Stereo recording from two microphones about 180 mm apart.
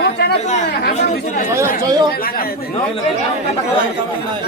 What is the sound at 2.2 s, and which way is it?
Speech, 55° left (ahead or behind).